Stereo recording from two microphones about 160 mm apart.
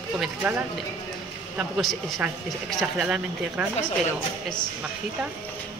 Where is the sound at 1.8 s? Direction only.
Centre (ahead or behind).